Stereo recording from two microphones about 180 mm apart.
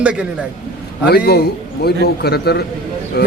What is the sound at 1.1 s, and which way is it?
A man's voice, 60° left (ahead or behind).